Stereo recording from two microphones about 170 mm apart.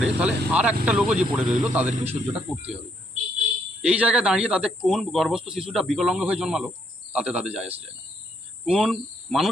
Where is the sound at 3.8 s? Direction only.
10° right (ahead or behind).